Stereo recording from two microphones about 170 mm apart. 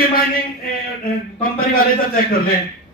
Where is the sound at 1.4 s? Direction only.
60° left (ahead or behind).